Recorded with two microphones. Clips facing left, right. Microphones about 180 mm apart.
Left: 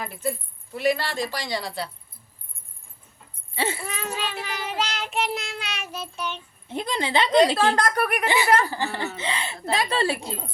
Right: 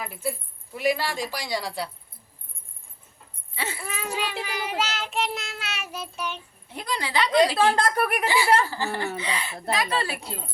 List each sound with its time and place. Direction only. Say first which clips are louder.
0.0 s child singing: left 2 dB; 10° right (ahead or behind)
3.5 s dog: left 6 dB; 25° left (ahead or behind)
3.8 s child singing: even; 10° right (ahead or behind)
6.7 s a woman's voice: left 4 dB; 25° left (ahead or behind)
7.8 s speech: even; 25° right (ahead or behind)
8.6 s a woman's voice: even; 20° left (ahead or behind)